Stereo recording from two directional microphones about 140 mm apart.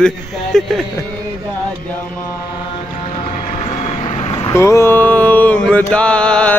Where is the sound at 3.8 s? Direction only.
50° left (ahead or behind).